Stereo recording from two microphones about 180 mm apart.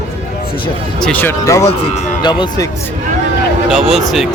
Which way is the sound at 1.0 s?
5° left (ahead or behind).